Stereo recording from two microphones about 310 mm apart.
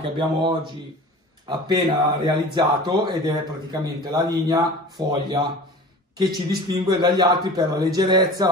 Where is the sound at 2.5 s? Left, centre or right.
Centre.